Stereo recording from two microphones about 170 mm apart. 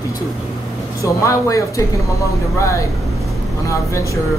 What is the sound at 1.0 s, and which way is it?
Speech, 20° left (ahead or behind).